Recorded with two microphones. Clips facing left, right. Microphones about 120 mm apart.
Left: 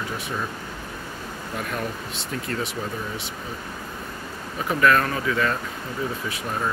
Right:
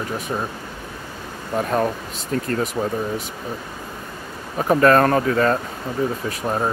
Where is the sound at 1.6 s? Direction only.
40° right (ahead or behind).